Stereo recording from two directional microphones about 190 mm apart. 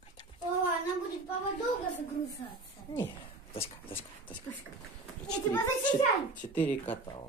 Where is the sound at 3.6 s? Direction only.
10° left (ahead or behind).